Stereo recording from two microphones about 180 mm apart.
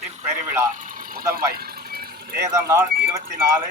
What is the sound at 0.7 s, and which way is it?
Vehicle, 45° right (ahead or behind).